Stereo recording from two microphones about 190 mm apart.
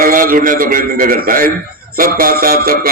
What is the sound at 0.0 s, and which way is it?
A man's voice, 50° right (ahead or behind).